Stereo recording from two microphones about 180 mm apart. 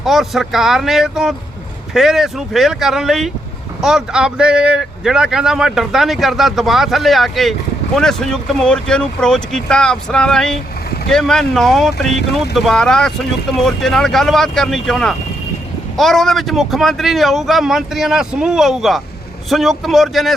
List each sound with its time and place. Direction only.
0.0 s speech: centre (ahead or behind)